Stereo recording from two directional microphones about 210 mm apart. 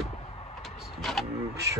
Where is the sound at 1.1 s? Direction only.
Centre (ahead or behind).